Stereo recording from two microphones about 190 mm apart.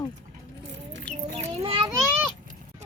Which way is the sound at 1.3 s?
30° right (ahead or behind).